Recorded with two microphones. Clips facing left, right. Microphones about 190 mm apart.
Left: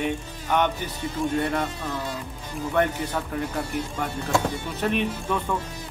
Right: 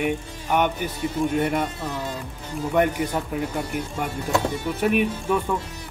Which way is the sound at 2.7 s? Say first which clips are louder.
Right 3 dB; 10° right (ahead or behind).